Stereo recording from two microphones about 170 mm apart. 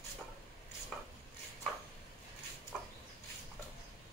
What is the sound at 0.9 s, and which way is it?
Chopping, 5° left (ahead or behind).